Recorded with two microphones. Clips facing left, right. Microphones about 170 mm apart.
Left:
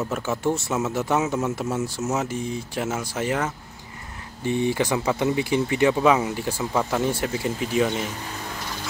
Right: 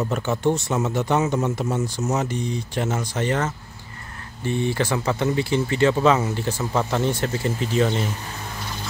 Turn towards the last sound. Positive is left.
turn(degrees=10)  # may be behind; listen again after turning